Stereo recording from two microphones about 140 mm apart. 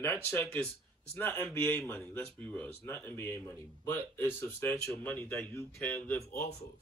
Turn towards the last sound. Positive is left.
turn(degrees=15)  # may be behind; listen again after turning